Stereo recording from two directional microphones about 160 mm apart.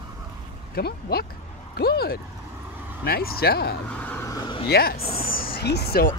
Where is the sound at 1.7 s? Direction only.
75° left (ahead or behind).